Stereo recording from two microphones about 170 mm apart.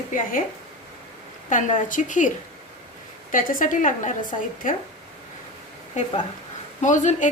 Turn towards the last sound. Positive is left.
turn(degrees=45)  # may be behind; listen again after turning